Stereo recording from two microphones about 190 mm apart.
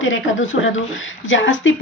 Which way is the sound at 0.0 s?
90° left.